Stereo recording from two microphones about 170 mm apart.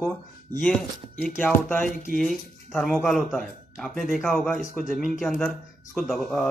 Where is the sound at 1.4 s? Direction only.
10° left (ahead or behind).